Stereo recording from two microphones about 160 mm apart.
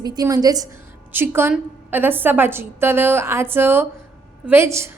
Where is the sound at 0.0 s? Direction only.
25° right (ahead or behind).